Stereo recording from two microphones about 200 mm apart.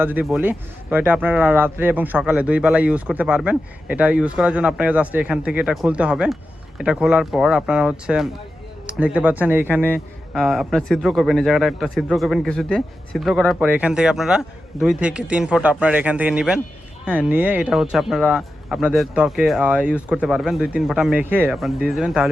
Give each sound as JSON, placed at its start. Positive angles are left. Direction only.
{"t": 0.0, "sound": "a man's voice", "side_deg": -10}